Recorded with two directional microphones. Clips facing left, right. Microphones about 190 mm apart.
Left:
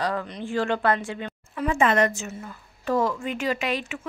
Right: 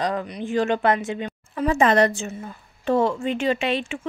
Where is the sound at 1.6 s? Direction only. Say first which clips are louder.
Right 3 dB; 35° right (ahead or behind).